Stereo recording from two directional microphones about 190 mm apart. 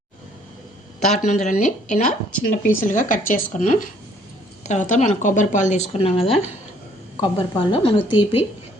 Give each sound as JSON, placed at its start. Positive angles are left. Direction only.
{"t": 1.2, "sound": "a woman's voice", "side_deg": 40}